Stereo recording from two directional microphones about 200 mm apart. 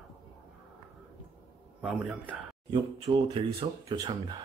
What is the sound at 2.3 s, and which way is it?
Speech, 25° right (ahead or behind).